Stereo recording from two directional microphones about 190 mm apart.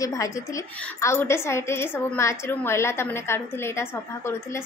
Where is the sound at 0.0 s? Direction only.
15° left (ahead or behind).